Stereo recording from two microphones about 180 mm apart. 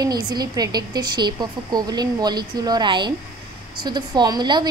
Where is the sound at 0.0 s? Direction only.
20° right (ahead or behind).